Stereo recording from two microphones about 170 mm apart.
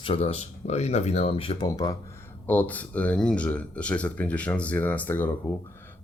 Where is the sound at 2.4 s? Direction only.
10° left (ahead or behind).